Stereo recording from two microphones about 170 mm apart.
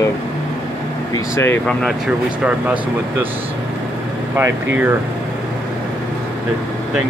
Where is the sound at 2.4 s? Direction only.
10° right (ahead or behind).